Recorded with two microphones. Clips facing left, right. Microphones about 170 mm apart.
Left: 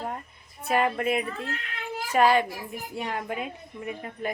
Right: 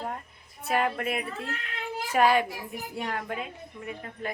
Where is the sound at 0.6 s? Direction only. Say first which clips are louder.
Left 3 dB; centre (ahead or behind).